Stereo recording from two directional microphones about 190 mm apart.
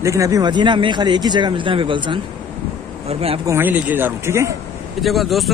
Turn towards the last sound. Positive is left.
turn(degrees=0)  # may be behind; listen again after turning